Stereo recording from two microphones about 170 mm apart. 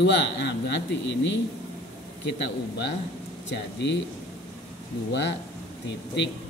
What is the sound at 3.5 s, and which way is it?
Speech, 90° left.